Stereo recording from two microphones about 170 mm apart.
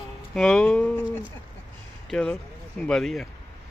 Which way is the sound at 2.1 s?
5° left (ahead or behind).